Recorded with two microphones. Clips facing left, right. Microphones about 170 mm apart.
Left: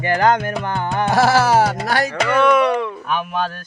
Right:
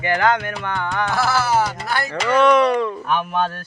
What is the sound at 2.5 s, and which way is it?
Speech, 10° left (ahead or behind).